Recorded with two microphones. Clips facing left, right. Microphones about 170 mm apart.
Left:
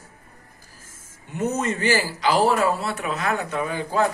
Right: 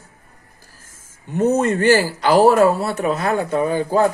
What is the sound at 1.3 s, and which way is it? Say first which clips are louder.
Speech: right 8 dB; 55° right (ahead or behind).